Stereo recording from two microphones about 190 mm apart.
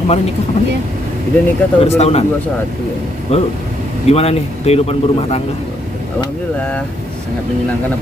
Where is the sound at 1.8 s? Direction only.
35° left (ahead or behind).